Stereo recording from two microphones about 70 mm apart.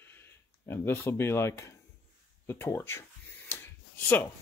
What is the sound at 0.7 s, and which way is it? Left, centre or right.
Speech, left.